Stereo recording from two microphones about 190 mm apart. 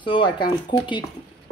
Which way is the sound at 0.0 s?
25° left (ahead or behind).